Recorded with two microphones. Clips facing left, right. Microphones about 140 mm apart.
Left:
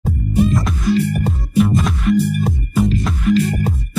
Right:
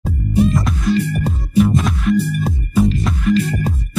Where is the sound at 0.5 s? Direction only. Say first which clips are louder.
Even; centre (ahead or behind).